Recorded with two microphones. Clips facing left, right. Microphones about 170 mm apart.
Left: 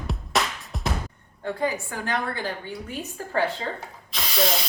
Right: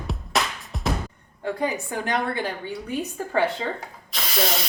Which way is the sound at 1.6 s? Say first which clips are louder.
Even; 20° right (ahead or behind).